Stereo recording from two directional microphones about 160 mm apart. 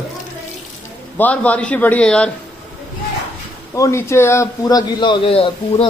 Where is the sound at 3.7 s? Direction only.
20° left (ahead or behind).